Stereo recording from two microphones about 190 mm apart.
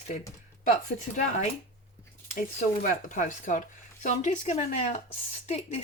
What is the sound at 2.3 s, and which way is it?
Speech, 45° left (ahead or behind).